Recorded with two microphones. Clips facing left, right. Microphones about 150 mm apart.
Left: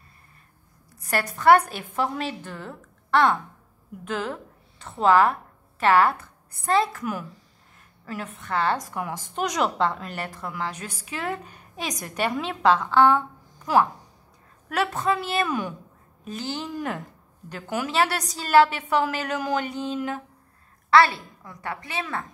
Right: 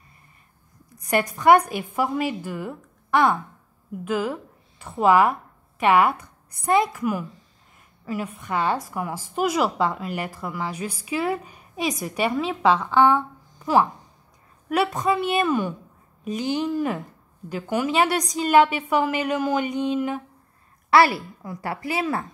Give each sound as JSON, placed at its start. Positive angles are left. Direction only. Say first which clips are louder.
{"t": 1.1, "sound": "a woman's voice", "louder": "right 1 dB", "side_deg": -10}
{"t": 14.7, "sound": "a woman's voice", "louder": "right 3 dB", "side_deg": -10}
{"t": 21.4, "sound": "a woman's voice", "louder": "right 4 dB", "side_deg": -30}